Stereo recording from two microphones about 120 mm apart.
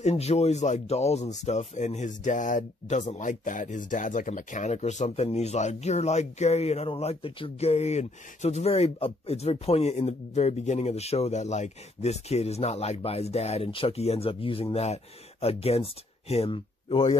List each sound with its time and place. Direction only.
0.0 s speech: 60° left (ahead or behind)